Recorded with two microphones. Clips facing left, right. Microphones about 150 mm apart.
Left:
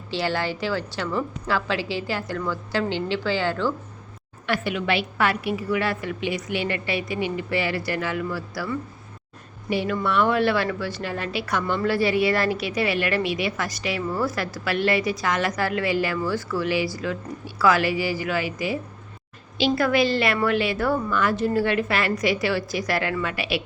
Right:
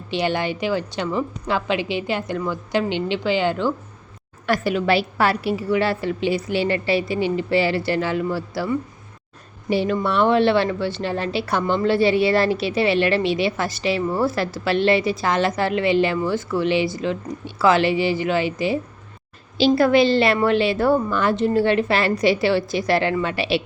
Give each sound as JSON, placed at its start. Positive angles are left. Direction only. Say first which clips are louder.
{"t": 0.1, "sound": "a woman's voice", "louder": "right 3 dB", "side_deg": -20}
{"t": 4.4, "sound": "a woman's voice", "louder": "right 5 dB", "side_deg": -40}